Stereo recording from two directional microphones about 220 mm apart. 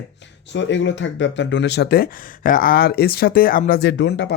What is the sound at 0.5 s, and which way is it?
Speech, 55° left (ahead or behind).